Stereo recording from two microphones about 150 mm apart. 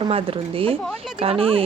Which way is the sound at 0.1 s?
40° right (ahead or behind).